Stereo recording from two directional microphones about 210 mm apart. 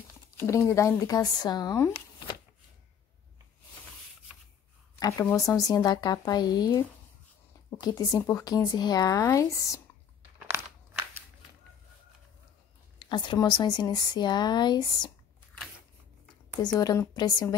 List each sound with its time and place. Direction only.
0.5 s speech: 15° left (ahead or behind)
4.9 s speech: 15° left (ahead or behind)
7.8 s speech: 15° left (ahead or behind)
10.5 s a sound: 10° right (ahead or behind)
13.0 s speech: 20° left (ahead or behind)
16.6 s speech: 15° left (ahead or behind)